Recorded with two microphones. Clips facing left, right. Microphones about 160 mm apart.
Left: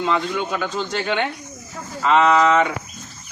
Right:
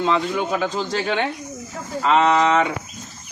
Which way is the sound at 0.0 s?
30° right (ahead or behind).